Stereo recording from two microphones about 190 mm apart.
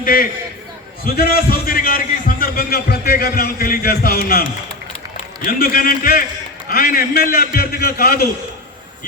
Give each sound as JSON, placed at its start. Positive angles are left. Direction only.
{"t": 0.0, "sound": "a man's voice", "side_deg": 50}